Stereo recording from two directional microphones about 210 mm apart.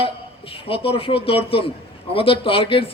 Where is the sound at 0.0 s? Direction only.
25° left (ahead or behind).